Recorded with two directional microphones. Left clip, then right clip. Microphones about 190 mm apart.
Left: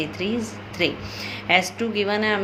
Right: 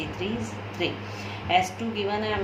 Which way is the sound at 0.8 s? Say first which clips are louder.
Left 6 dB; 45° left (ahead or behind).